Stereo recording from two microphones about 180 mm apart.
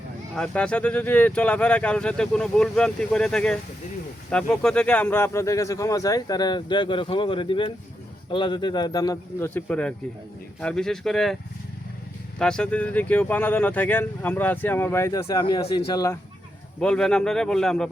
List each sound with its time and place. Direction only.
0.3 s speech: 5° left (ahead or behind)
12.4 s speech: 5° left (ahead or behind)
16.8 s speech: 5° left (ahead or behind)